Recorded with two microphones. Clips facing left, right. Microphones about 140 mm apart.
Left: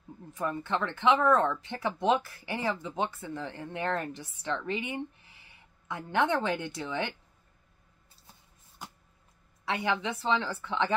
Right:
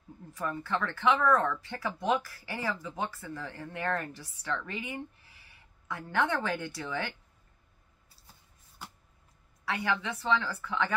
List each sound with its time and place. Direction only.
0.3 s speech: 20° left (ahead or behind)
9.7 s speech: 20° left (ahead or behind)